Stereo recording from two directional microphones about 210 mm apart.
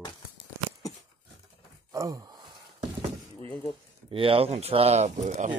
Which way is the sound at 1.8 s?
15° right (ahead or behind).